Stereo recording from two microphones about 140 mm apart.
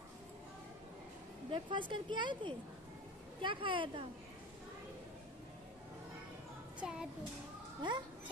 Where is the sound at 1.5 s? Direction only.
35° right (ahead or behind).